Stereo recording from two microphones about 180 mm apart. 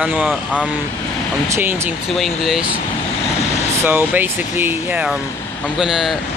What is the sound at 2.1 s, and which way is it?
Speech, centre (ahead or behind).